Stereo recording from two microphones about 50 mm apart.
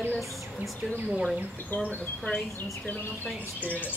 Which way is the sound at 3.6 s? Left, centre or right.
Left.